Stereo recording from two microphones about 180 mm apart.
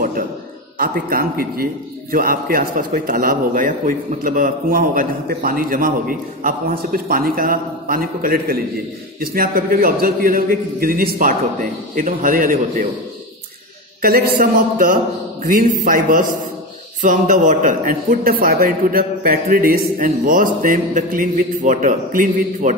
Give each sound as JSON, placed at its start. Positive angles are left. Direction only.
{"t": 0.7, "sound": "a man's voice", "side_deg": -55}
{"t": 14.0, "sound": "a man's voice", "side_deg": -50}